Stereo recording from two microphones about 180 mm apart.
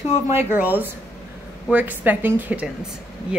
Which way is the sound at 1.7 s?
10° right (ahead or behind).